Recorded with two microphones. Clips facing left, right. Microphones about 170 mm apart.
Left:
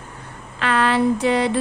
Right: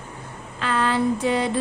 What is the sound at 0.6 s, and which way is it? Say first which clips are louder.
Speech: left 3 dB; 75° left (ahead or behind).